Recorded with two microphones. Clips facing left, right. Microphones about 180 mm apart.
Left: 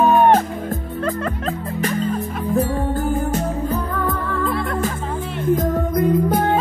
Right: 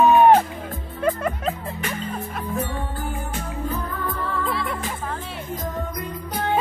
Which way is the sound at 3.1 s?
40° left (ahead or behind).